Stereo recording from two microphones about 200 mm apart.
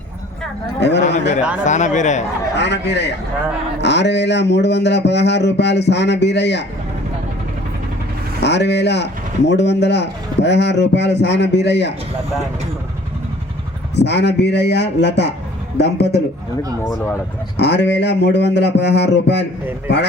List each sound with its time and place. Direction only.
0.8 s speech: 60° left (ahead or behind)
1.6 s speech: 35° left (ahead or behind)
2.6 s speech: 60° left (ahead or behind)
8.4 s speech: 60° left (ahead or behind)
13.9 s speech: 60° left (ahead or behind)
17.6 s speech: 60° left (ahead or behind)